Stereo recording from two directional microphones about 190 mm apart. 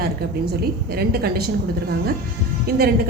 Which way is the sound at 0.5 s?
55° right (ahead or behind).